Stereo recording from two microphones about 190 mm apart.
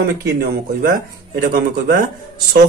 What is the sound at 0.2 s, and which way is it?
A man's voice, 55° right (ahead or behind).